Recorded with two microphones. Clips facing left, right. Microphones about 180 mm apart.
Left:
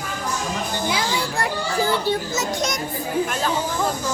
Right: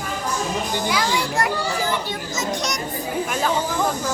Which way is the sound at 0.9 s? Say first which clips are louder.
Right 1 dB; 25° left (ahead or behind).